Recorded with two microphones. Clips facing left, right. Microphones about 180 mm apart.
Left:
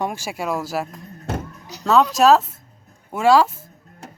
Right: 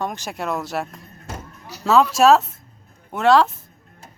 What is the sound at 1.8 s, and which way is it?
Speech, centre (ahead or behind).